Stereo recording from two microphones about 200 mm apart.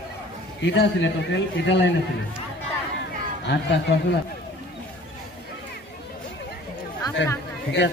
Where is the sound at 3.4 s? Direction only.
60° left (ahead or behind).